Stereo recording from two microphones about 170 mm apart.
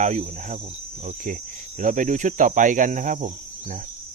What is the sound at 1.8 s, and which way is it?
Speech, 50° right (ahead or behind).